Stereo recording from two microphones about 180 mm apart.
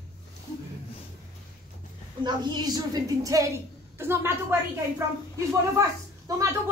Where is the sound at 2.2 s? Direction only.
25° right (ahead or behind).